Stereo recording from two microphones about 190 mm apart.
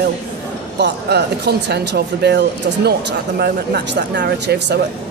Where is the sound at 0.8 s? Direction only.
60° right (ahead or behind).